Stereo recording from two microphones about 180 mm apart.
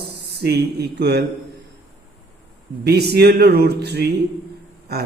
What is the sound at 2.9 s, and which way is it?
Speech, 65° right (ahead or behind).